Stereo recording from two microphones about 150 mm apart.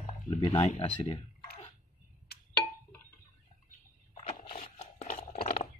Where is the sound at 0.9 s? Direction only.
35° left (ahead or behind).